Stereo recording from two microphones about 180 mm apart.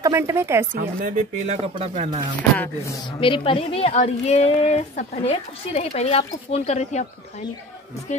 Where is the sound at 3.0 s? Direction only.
30° left (ahead or behind).